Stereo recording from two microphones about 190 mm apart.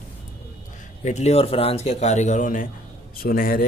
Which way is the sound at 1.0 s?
35° left (ahead or behind).